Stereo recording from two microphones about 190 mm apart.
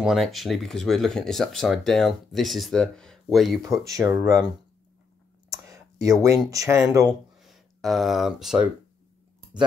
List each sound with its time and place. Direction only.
0.0 s speech: centre (ahead or behind)
3.7 s speech: 15° right (ahead or behind)
5.5 s a sound: 15° right (ahead or behind)
6.5 s speech: 15° right (ahead or behind)
7.3 s speech: centre (ahead or behind)